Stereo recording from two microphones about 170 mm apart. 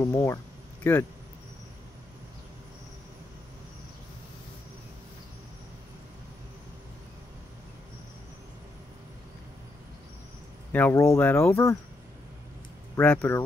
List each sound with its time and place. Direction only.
0.0 s speech: 15° left (ahead or behind)
10.7 s speech: 10° left (ahead or behind)
12.9 s speech: 10° left (ahead or behind)